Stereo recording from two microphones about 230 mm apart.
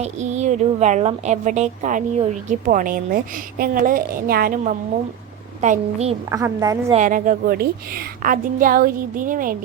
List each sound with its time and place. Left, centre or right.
0.0 s a woman's voice: right
6.3 s a woman's voice: centre
6.9 s a woman's voice: right